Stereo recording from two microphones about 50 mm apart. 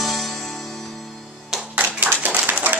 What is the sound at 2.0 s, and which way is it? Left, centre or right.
Clapping, right.